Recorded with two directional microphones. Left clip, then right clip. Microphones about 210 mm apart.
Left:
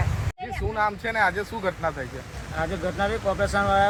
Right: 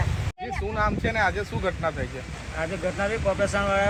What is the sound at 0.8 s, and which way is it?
Speech, 45° right (ahead or behind).